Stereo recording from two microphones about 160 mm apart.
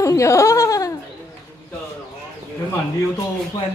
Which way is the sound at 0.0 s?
20° left (ahead or behind).